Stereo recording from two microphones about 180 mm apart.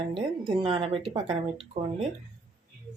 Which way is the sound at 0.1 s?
30° right (ahead or behind).